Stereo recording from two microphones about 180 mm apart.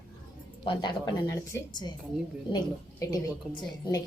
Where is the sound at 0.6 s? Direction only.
25° left (ahead or behind).